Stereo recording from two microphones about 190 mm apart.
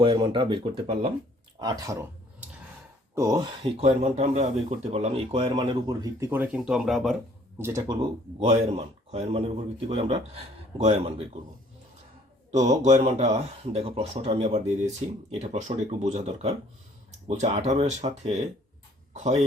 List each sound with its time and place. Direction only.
0.0 s a man's voice: 25° right (ahead or behind)
1.6 s a man's voice: 15° right (ahead or behind)
3.8 s a man's voice: 35° right (ahead or behind); by 7.2 s centre (ahead or behind)
7.6 s speech: 15° right (ahead or behind)
8.4 s speech: 30° right (ahead or behind)
12.5 s a man's voice: 35° right (ahead or behind)